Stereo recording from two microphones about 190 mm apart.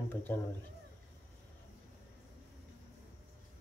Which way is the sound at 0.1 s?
10° left (ahead or behind).